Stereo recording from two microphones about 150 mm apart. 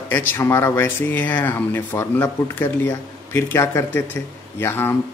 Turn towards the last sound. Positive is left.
turn(degrees=15)  # may be behind; listen again after turning